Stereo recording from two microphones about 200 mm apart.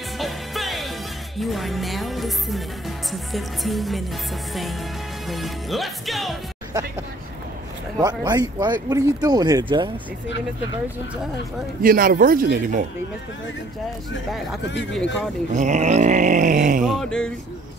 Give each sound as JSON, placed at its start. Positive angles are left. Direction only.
{"t": 0.2, "sound": "music", "side_deg": 0}
{"t": 5.3, "sound": "music", "side_deg": 0}
{"t": 8.0, "sound": "speech", "side_deg": -20}
{"t": 11.8, "sound": "a man's voice", "side_deg": -45}
{"t": 14.6, "sound": "speech", "side_deg": 65}
{"t": 15.5, "sound": "groan", "side_deg": -35}
{"t": 16.8, "sound": "music", "side_deg": 0}